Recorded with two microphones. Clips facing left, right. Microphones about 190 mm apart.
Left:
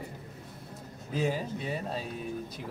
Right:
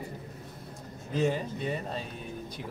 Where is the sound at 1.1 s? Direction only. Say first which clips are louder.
Right 2 dB; 5° left (ahead or behind).